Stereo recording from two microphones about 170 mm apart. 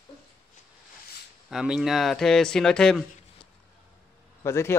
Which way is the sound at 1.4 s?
5° right (ahead or behind).